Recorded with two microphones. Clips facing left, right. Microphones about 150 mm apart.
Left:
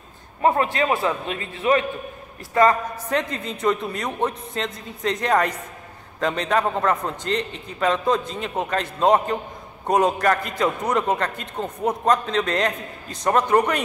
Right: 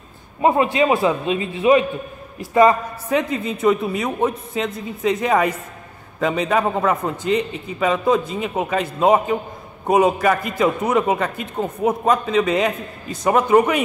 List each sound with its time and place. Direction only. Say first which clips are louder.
0.4 s a man's voice: right 4 dB; 15° right (ahead or behind)